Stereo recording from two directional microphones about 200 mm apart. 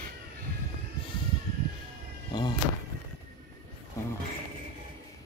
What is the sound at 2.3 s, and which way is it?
Speech, 20° left (ahead or behind).